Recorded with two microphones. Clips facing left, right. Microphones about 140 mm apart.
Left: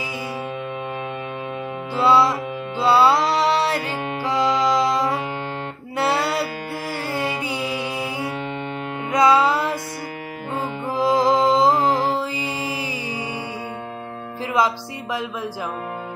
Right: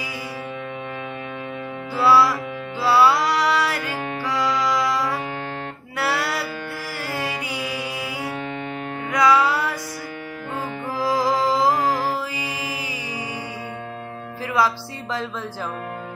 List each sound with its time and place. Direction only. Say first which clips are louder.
2.0 s music: even; 20° left (ahead or behind)
14.6 s music: left 1 dB; 20° left (ahead or behind)